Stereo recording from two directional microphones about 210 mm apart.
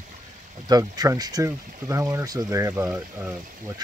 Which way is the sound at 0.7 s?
20° right (ahead or behind).